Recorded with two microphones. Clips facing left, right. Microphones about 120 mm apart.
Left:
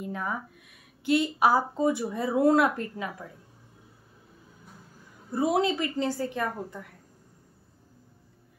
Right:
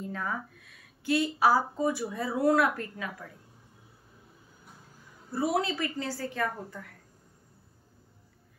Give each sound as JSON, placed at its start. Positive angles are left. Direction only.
{"t": 0.0, "sound": "a woman's voice", "side_deg": 15}
{"t": 5.3, "sound": "a woman's voice", "side_deg": 20}